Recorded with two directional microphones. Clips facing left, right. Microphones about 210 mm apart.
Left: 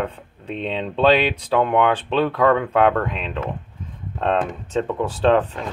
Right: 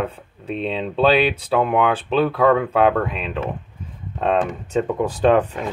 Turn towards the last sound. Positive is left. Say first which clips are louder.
# right 1 dB
turn(degrees=-10)  # may be behind; listen again after turning